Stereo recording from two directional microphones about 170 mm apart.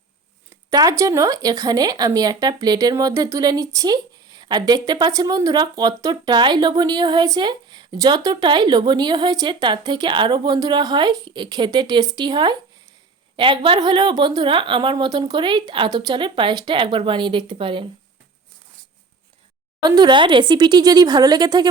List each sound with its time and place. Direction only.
0.5 s speech: 20° right (ahead or behind)
19.8 s speech: 25° right (ahead or behind)